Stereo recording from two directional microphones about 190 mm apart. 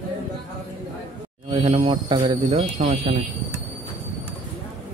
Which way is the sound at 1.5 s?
30° right (ahead or behind).